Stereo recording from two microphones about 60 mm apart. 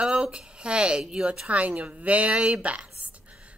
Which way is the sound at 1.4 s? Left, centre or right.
Right.